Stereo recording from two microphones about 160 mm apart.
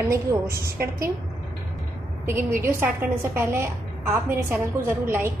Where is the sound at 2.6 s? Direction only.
15° right (ahead or behind).